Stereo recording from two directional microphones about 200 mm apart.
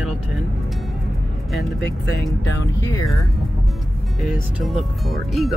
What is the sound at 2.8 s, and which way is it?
Speech, 15° left (ahead or behind).